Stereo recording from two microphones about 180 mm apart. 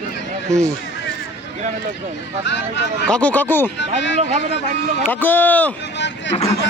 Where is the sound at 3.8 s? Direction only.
80° left.